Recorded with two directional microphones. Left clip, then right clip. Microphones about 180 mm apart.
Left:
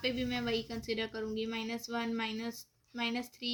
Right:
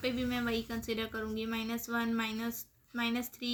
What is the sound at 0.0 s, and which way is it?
A woman's voice, 15° right (ahead or behind).